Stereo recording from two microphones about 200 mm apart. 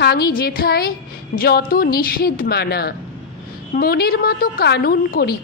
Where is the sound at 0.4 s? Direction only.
50° left (ahead or behind).